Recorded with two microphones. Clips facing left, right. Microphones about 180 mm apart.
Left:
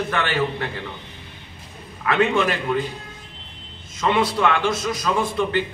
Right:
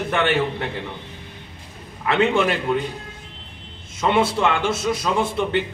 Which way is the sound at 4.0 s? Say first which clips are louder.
Right 1 dB; 25° right (ahead or behind).